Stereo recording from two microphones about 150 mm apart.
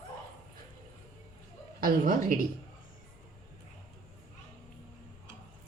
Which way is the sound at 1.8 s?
70° right (ahead or behind).